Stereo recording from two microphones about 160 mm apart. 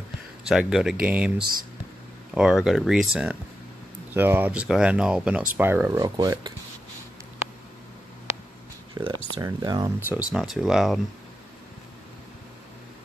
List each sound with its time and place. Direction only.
0.5 s speech: 5° right (ahead or behind)
2.3 s speech: 5° right (ahead or behind); by 6.5 s 25° right (ahead or behind)
8.9 s speech: 25° right (ahead or behind)
10.1 s speech: 5° right (ahead or behind)